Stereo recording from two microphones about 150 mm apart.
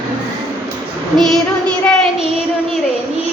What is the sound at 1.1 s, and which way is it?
Child singing, centre (ahead or behind).